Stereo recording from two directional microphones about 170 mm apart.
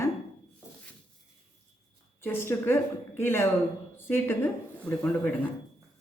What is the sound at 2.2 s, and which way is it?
Speech, 15° left (ahead or behind).